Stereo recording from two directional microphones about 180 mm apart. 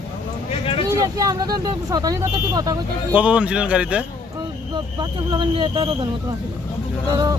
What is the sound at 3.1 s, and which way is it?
Speech, 5° right (ahead or behind).